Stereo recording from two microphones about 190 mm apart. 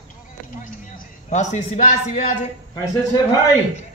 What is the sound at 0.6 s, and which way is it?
A man's voice, 45° left (ahead or behind).